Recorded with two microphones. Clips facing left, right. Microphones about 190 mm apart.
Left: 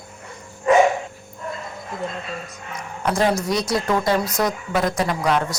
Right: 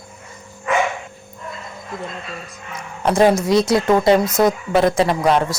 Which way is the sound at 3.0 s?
25° right (ahead or behind).